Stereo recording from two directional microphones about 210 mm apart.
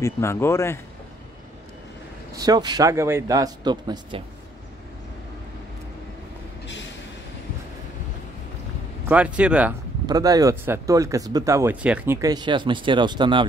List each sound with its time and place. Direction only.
0.0 s speech: 15° left (ahead or behind)
2.3 s speech: 20° right (ahead or behind)
6.6 s train: 60° left (ahead or behind)
9.1 s a man's voice: 5° right (ahead or behind)
10.0 s speech: 20° right (ahead or behind)